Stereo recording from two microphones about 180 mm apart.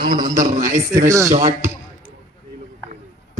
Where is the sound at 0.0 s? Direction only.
50° right (ahead or behind).